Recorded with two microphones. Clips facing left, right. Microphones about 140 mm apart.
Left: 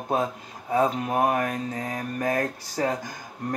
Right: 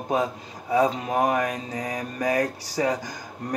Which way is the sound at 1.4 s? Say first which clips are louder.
Even; 15° right (ahead or behind).